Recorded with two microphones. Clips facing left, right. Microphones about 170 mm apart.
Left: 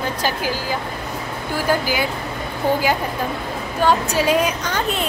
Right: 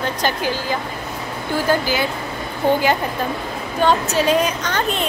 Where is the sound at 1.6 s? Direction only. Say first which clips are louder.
Right 1 dB; 10° left (ahead or behind).